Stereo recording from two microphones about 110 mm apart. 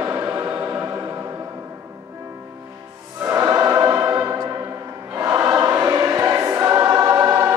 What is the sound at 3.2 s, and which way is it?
Choir, 25° right (ahead or behind).